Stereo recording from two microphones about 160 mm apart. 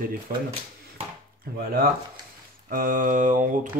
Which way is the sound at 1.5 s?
75° right (ahead or behind).